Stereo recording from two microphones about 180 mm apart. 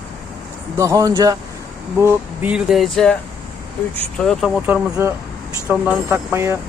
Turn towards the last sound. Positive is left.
turn(degrees=-15)  # may be behind; listen again after turning